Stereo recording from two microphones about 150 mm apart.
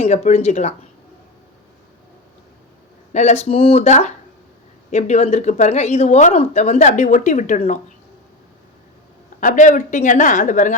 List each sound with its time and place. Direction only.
0.0 s speech: 45° left (ahead or behind)
3.1 s speech: 50° left (ahead or behind)
9.4 s a woman's voice: 60° left (ahead or behind)